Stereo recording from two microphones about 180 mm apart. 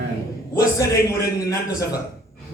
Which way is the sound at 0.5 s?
20° left (ahead or behind).